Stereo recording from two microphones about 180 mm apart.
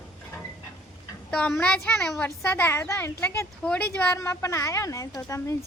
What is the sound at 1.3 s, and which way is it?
A woman's voice, 5° left (ahead or behind).